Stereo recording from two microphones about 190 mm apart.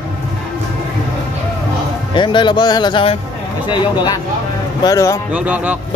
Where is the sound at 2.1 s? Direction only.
25° left (ahead or behind).